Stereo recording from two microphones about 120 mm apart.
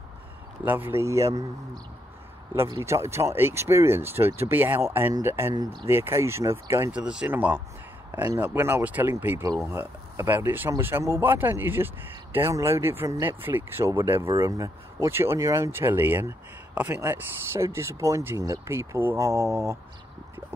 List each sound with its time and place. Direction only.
0.7 s speech: 15° right (ahead or behind)
2.8 s speech: 20° right (ahead or behind)
6.9 s speech: 10° right (ahead or behind)
8.1 s speech: 35° right (ahead or behind)
8.4 s speech: 20° right (ahead or behind)